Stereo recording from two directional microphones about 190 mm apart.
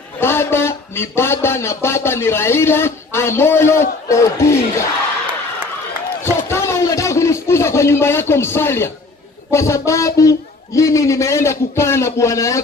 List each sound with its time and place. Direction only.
0.2 s a man's voice: 10° left (ahead or behind)
6.2 s a sound: 15° left (ahead or behind)
9.5 s a man's voice: 15° left (ahead or behind)